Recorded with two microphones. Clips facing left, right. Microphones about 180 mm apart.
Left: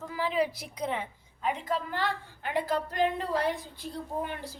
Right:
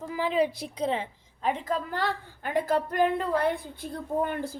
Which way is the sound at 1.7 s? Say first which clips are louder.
Right 2 dB; 40° right (ahead or behind).